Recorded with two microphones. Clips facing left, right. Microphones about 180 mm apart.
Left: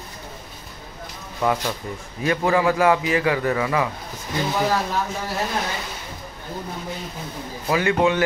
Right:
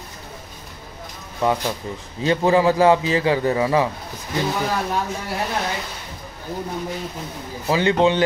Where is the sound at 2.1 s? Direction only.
25° right (ahead or behind).